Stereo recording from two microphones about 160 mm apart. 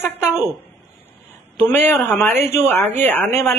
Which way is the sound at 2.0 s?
15° left (ahead or behind).